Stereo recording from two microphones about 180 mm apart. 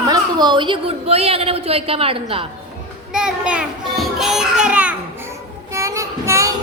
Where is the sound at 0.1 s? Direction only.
25° right (ahead or behind).